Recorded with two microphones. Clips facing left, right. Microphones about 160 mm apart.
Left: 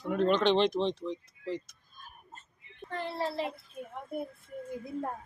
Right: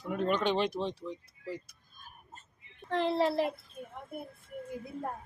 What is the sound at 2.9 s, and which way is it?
Speech, 90° right.